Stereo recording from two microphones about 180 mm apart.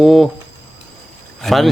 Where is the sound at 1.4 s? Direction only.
Centre (ahead or behind).